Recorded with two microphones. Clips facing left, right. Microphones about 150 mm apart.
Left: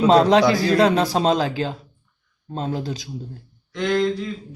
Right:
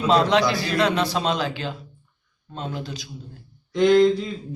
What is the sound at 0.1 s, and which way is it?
A man's voice, 40° left (ahead or behind).